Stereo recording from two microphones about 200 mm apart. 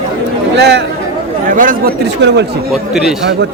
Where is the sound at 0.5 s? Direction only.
55° right (ahead or behind).